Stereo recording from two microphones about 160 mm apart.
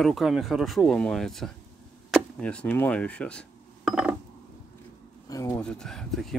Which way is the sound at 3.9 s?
5° right (ahead or behind).